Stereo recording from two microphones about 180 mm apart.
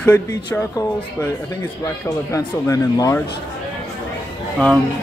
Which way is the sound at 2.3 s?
15° left (ahead or behind).